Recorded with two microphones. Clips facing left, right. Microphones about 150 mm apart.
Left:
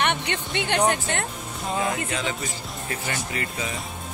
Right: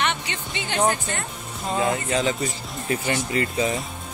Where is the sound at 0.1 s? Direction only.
55° left (ahead or behind).